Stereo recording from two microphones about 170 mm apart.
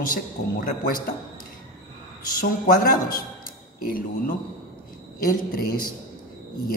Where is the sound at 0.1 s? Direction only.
55° left (ahead or behind).